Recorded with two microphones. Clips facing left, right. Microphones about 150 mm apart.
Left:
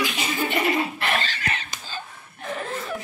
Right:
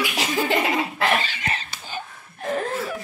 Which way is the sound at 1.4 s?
30° right (ahead or behind).